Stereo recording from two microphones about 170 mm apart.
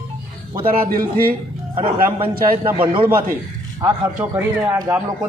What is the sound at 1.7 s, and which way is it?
Speech, 30° right (ahead or behind).